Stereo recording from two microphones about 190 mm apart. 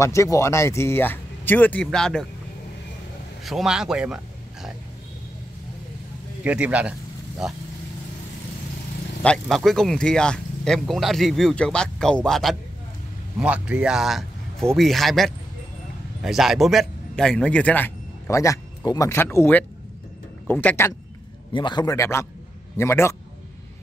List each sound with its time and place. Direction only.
0.0 s speech: 15° left (ahead or behind)
3.4 s speech: centre (ahead or behind)
6.4 s a man's voice: 5° right (ahead or behind)
9.2 s a man's voice: 5° left (ahead or behind)
21.5 s a man's voice: 25° left (ahead or behind)